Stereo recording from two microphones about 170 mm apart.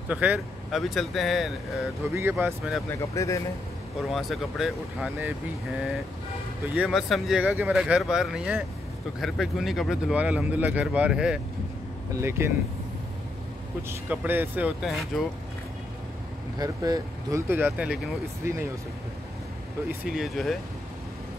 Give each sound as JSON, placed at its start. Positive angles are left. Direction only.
{"t": 0.1, "sound": "speech", "side_deg": -10}
{"t": 2.1, "sound": "speech", "side_deg": -15}
{"t": 2.9, "sound": "speech", "side_deg": 20}
{"t": 4.1, "sound": "speech", "side_deg": 0}
{"t": 6.8, "sound": "speech", "side_deg": 0}
{"t": 13.8, "sound": "speech", "side_deg": -10}
{"t": 16.5, "sound": "speech", "side_deg": -20}
{"t": 20.1, "sound": "speech", "side_deg": 0}